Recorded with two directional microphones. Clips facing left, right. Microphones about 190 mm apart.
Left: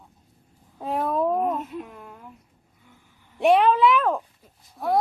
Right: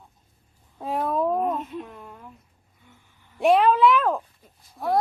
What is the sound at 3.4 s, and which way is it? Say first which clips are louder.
Speech: even; centre (ahead or behind).